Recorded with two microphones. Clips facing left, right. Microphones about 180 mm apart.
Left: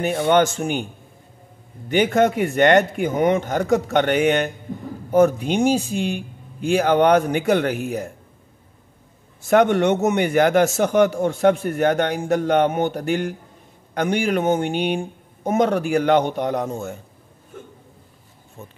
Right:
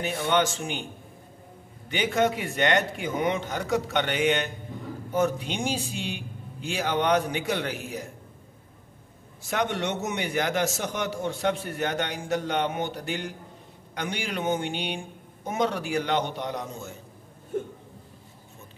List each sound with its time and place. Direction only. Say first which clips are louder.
0.0 s a man's voice: left 8 dB; 50° left (ahead or behind)
1.9 s a man's voice: left 7 dB; 50° left (ahead or behind)
9.4 s a man's voice: left 12 dB; 50° left (ahead or behind)